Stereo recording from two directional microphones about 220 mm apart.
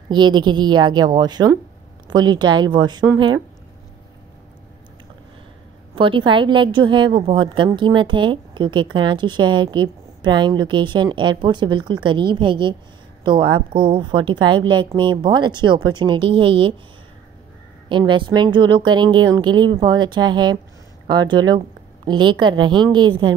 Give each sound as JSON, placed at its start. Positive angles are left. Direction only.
{"t": 0.1, "sound": "a woman's voice", "side_deg": -20}
{"t": 5.9, "sound": "a woman's voice", "side_deg": -25}
{"t": 17.8, "sound": "a woman's voice", "side_deg": -20}